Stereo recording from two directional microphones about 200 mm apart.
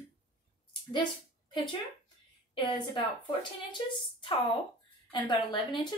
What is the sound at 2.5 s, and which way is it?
Speech, 25° left (ahead or behind).